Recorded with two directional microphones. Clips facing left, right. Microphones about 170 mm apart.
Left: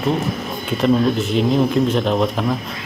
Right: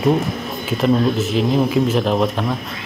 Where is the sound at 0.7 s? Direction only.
Centre (ahead or behind).